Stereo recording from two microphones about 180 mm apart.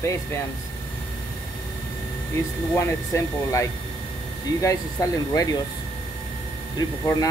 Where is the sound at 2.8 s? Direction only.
15° left (ahead or behind).